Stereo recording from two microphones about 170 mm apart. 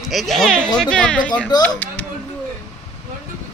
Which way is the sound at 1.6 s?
10° left (ahead or behind).